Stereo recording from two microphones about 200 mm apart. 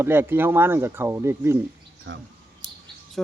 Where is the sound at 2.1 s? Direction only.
60° right (ahead or behind).